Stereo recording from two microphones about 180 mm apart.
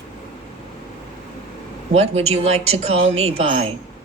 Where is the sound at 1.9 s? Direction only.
35° right (ahead or behind).